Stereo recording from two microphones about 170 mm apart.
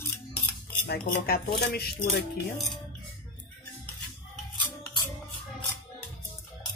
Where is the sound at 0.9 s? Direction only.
65° left (ahead or behind).